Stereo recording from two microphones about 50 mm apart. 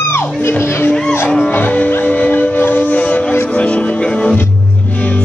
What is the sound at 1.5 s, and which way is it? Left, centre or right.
Music, left.